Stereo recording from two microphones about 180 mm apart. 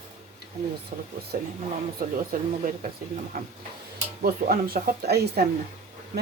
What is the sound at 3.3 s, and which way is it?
Speech, 55° right (ahead or behind).